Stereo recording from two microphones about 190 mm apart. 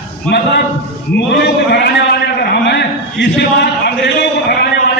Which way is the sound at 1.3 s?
60° left (ahead or behind).